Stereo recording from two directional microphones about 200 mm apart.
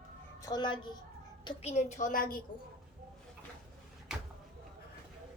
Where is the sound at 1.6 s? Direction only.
35° left (ahead or behind).